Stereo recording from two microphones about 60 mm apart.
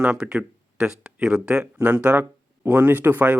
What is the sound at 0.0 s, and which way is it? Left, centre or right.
Speech, centre.